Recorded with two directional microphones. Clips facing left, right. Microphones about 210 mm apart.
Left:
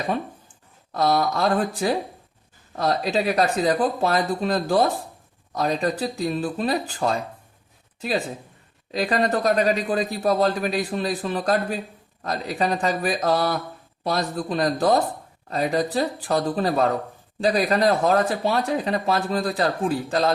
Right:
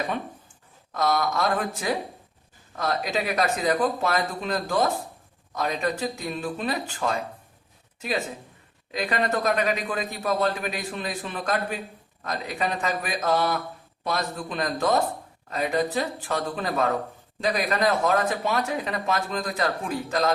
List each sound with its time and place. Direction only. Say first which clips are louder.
0.9 s a man's voice: left 3 dB; 35° left (ahead or behind)